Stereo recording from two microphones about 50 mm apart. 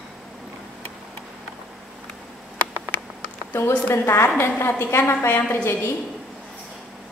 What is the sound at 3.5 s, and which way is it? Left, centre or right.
Speech, left.